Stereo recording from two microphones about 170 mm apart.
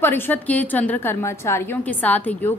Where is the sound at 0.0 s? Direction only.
10° left (ahead or behind).